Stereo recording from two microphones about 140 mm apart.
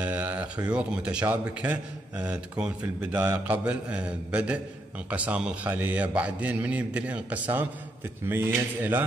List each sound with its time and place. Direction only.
0.0 s speech: 10° right (ahead or behind)